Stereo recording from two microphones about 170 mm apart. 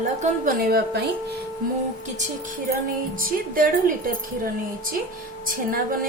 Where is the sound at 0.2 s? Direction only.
45° right (ahead or behind).